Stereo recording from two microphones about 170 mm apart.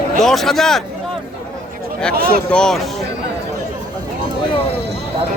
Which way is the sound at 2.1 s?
65° right (ahead or behind).